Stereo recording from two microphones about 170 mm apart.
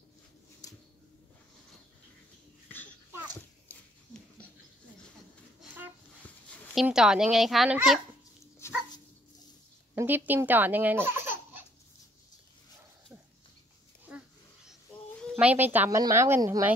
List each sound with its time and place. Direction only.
0.6 s a sound: 20° left (ahead or behind)
6.7 s speech: centre (ahead or behind)
8.5 s dog: 15° left (ahead or behind)
9.9 s speech: 10° right (ahead or behind)
14.7 s a sound: centre (ahead or behind)
15.4 s speech: 10° right (ahead or behind)